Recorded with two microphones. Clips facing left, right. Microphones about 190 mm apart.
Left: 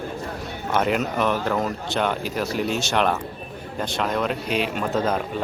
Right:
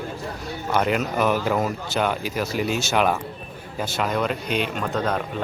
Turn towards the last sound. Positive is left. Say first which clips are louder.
# left 2 dB
turn(degrees=5)  # may be behind; listen again after turning